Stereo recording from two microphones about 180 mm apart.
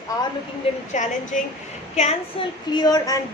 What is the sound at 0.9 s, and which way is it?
A woman's voice, 45° left (ahead or behind).